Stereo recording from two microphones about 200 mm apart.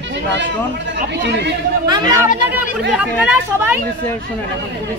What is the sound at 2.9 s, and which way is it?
Speech, 5° right (ahead or behind).